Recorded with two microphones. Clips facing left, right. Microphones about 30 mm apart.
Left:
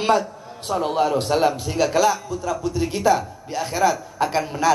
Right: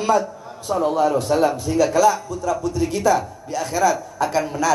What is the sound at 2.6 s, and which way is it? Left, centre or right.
A man's voice, centre.